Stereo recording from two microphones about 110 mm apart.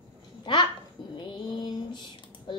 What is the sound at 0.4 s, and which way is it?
Babbling, 45° left (ahead or behind).